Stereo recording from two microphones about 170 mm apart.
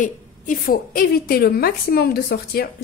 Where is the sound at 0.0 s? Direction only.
55° left (ahead or behind).